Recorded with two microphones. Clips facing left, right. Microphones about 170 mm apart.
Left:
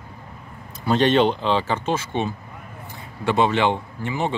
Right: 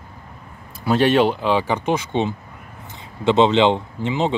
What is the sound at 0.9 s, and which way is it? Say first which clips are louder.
Speech: right 1 dB; 5° right (ahead or behind).